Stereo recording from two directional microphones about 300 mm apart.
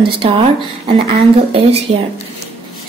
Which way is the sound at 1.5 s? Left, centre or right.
Centre.